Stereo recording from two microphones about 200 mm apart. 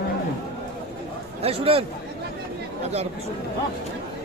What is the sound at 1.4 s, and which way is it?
Speech, 30° right (ahead or behind).